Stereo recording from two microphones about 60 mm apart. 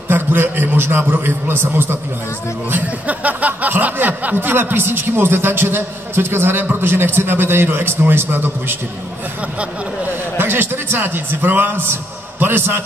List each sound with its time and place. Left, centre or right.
0.1 s speech: right
2.7 s speech: right
10.3 s speech: right